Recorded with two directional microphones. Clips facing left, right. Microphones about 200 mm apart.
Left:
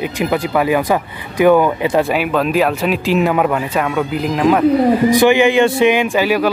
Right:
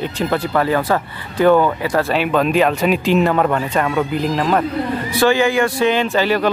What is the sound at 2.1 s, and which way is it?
Speech, 5° left (ahead or behind).